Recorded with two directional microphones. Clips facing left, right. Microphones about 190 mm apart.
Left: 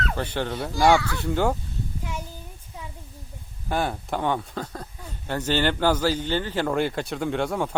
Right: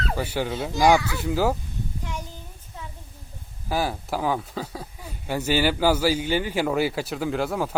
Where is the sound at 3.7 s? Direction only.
5° right (ahead or behind).